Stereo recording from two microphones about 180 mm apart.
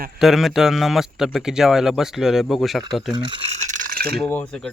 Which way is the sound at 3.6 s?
45° right (ahead or behind).